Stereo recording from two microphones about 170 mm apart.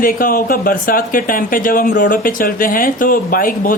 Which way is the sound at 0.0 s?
55° left (ahead or behind).